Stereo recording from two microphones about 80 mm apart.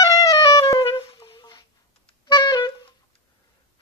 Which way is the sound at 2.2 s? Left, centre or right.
Left.